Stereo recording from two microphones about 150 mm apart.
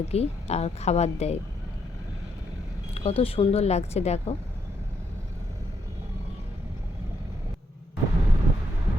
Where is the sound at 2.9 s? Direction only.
40° left (ahead or behind).